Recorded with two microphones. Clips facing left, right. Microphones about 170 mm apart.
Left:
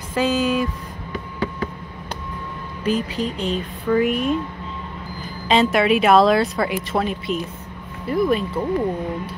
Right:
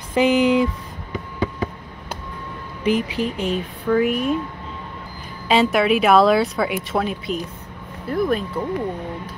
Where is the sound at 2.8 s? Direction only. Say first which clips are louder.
Right 2 dB; 10° right (ahead or behind).